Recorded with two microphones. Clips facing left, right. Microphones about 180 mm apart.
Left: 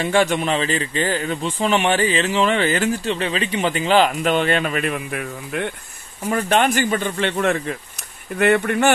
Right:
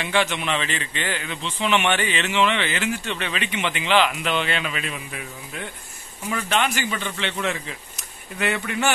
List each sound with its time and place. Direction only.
0.0 s a man's voice: 40° left (ahead or behind); by 5.7 s 60° left (ahead or behind)
6.2 s a man's voice: 45° left (ahead or behind)